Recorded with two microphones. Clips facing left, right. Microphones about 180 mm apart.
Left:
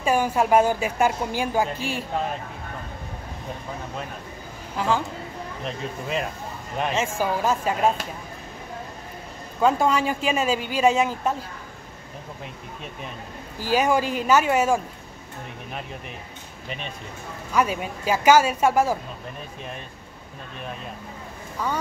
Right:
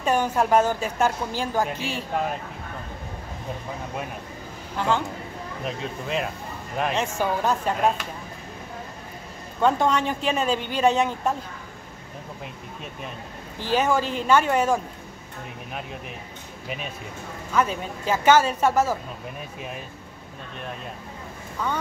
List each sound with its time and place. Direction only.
0.0 s a woman's voice: 10° left (ahead or behind)
4.7 s speech: 5° left (ahead or behind)
9.6 s speech: 5° left (ahead or behind)
13.6 s a woman's voice: 10° left (ahead or behind)
16.6 s speech: 5° right (ahead or behind)
17.5 s a woman's voice: 10° left (ahead or behind)